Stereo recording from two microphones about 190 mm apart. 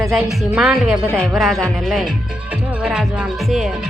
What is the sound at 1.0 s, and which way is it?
Speech, 5° left (ahead or behind).